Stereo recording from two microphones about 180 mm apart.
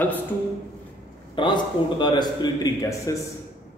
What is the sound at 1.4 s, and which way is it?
A man's voice, 25° left (ahead or behind).